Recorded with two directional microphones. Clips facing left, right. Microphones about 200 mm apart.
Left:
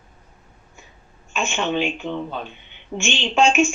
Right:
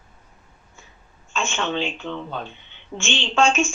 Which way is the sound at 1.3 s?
15° left (ahead or behind).